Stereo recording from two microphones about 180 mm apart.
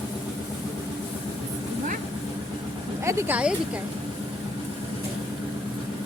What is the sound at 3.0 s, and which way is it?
Speech, 15° right (ahead or behind).